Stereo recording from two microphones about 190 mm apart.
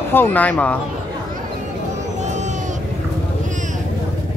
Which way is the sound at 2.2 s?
40° right (ahead or behind).